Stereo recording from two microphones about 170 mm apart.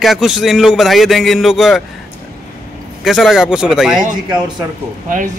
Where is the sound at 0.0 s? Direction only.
Centre (ahead or behind).